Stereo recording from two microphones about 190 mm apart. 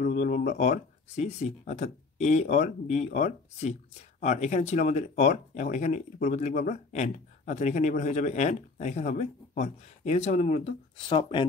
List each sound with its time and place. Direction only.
0.0 s speech: 40° left (ahead or behind)